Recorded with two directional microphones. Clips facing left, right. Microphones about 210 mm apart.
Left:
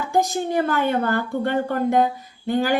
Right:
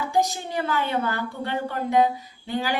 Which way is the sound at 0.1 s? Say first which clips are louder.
Left 6 dB; 50° left (ahead or behind).